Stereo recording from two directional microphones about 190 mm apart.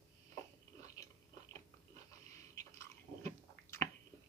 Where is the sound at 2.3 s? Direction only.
15° left (ahead or behind).